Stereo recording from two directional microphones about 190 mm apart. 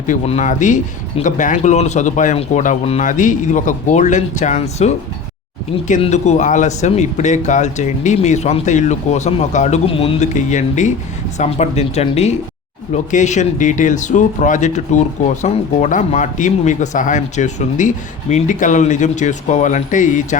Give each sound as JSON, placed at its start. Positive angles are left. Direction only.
{"t": 0.1, "sound": "speech", "side_deg": 40}
{"t": 5.9, "sound": "speech", "side_deg": 35}